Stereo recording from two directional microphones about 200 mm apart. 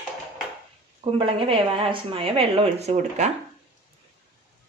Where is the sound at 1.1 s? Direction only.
25° right (ahead or behind).